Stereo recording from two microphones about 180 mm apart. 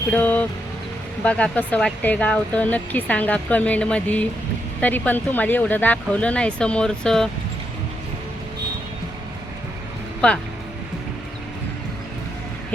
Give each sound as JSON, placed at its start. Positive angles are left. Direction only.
{"t": 0.1, "sound": "speech", "side_deg": 10}
{"t": 10.2, "sound": "speech", "side_deg": 5}